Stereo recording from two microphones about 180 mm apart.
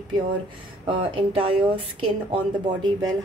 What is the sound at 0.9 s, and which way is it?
Speech, 30° right (ahead or behind).